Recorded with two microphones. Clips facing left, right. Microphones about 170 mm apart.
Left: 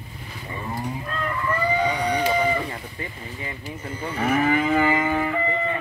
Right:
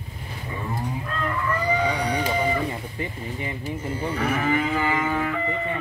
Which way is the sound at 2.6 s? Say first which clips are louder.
Right 3 dB; 20° right (ahead or behind).